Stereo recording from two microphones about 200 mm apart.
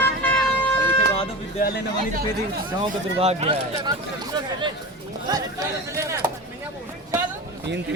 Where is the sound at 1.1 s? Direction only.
30° left (ahead or behind).